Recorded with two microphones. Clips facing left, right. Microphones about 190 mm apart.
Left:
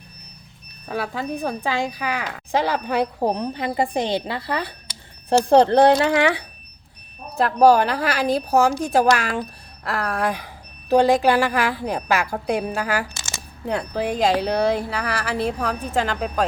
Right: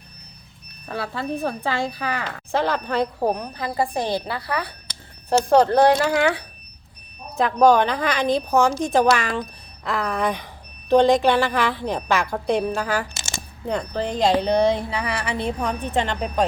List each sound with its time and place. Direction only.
0.9 s speech: 15° left (ahead or behind)
3.3 s a woman's voice: 25° left (ahead or behind)
7.3 s speech: 5° left (ahead or behind)